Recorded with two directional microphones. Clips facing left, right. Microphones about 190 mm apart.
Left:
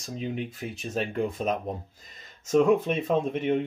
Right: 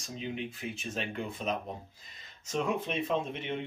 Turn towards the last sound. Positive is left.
turn(degrees=45)  # may be behind; listen again after turning